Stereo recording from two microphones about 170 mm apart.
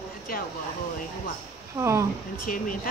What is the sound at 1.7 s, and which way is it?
Speech, 15° right (ahead or behind).